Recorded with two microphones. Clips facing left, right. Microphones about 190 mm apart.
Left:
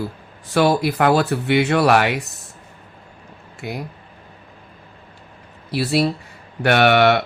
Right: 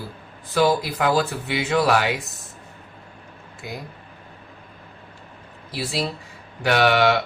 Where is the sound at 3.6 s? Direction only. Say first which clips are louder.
Left 6 dB; 70° left (ahead or behind).